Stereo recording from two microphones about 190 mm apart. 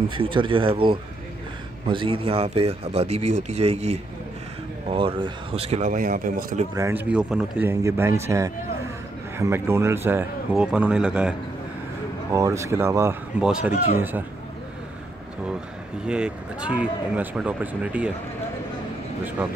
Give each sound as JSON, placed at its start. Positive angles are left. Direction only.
{"t": 0.1, "sound": "speech", "side_deg": -25}
{"t": 6.7, "sound": "speech", "side_deg": -15}
{"t": 7.1, "sound": "speech", "side_deg": -5}
{"t": 12.4, "sound": "speech", "side_deg": -15}
{"t": 16.1, "sound": "speech", "side_deg": -5}